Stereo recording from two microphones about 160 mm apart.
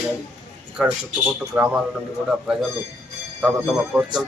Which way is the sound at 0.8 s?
10° right (ahead or behind).